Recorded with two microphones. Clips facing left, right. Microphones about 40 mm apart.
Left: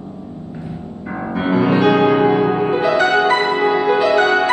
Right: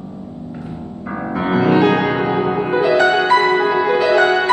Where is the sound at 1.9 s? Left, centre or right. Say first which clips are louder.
Left 4 dB; right.